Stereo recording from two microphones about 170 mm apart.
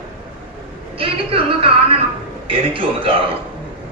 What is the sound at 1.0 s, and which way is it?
A woman's voice, 35° right (ahead or behind).